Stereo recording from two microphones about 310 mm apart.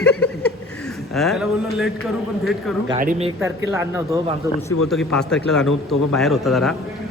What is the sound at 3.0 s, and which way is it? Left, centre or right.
Speech, right.